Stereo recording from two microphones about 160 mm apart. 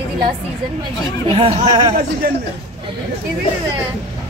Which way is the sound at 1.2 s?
35° right (ahead or behind).